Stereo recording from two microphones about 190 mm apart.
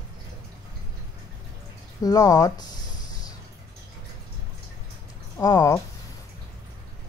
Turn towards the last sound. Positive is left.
turn(degrees=15)  # may be behind; listen again after turning